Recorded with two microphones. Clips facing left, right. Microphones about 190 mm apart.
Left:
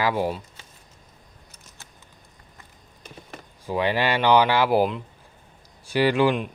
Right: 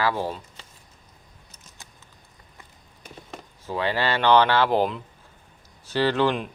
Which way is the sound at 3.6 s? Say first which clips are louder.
Left 2 dB; 15° left (ahead or behind).